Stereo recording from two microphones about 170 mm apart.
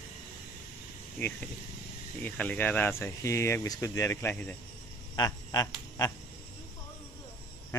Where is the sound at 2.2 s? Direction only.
10° left (ahead or behind).